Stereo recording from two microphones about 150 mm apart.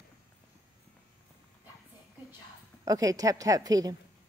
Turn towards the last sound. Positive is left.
turn(degrees=-25)  # may be behind; listen again after turning